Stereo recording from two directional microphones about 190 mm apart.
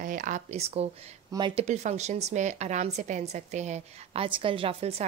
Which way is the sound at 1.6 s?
35° right (ahead or behind).